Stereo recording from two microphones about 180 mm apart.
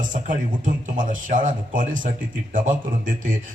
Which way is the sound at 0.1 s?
45° right (ahead or behind).